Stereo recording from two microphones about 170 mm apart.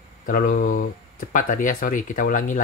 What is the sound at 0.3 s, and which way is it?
Speech, 55° left (ahead or behind).